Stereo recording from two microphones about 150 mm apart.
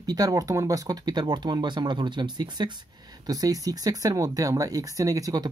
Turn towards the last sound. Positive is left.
turn(degrees=-25)  # may be behind; listen again after turning